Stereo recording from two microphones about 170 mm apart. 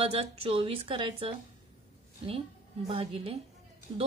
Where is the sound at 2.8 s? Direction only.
35° right (ahead or behind).